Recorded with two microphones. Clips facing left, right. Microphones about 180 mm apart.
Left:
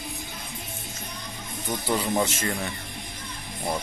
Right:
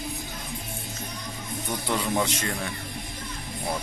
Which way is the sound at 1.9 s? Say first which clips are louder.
Left 1 dB; 5° left (ahead or behind).